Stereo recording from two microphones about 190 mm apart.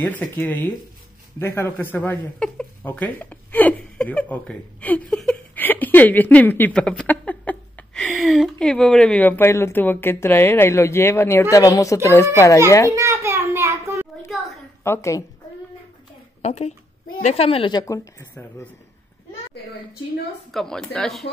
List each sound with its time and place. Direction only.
0.0 s a woman's voice: 10° left (ahead or behind)
12.9 s a sound: 15° right (ahead or behind)
14.8 s a woman's voice: 15° left (ahead or behind)
16.4 s a woman's voice: 35° left (ahead or behind); by 18.7 s 15° left (ahead or behind)
20.5 s speech: 5° left (ahead or behind)